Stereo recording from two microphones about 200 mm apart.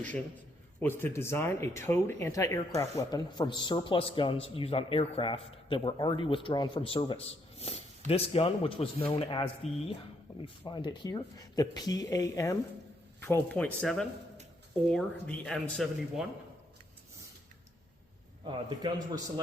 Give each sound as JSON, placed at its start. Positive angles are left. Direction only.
{"t": 0.8, "sound": "speech", "side_deg": 10}
{"t": 10.7, "sound": "speech", "side_deg": 20}
{"t": 18.4, "sound": "a man's voice", "side_deg": -25}